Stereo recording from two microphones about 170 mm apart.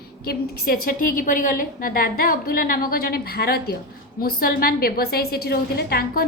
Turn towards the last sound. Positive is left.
turn(degrees=65)  # may be behind; listen again after turning